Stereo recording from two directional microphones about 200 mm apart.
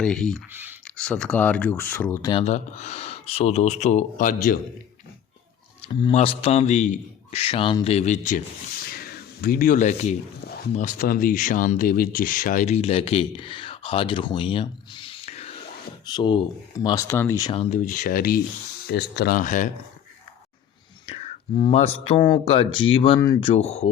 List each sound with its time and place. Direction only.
0.0 s speech: 5° left (ahead or behind)
0.5 s a sound: 10° right (ahead or behind)
0.9 s speech: 5° left (ahead or behind)
2.3 s speech: 30° left (ahead or behind)
5.9 s speech: 25° left (ahead or behind)
16.0 s speech: 20° left (ahead or behind)
17.5 s speech: 30° left (ahead or behind)
17.7 s speech: 40° left (ahead or behind)
21.1 s speech: 30° left (ahead or behind)
23.5 s speech: 35° left (ahead or behind)